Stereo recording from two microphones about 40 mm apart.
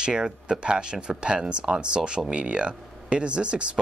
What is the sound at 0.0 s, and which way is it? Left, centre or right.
Speech, right.